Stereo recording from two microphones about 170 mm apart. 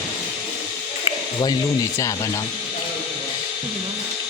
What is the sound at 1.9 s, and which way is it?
Speech, 20° left (ahead or behind).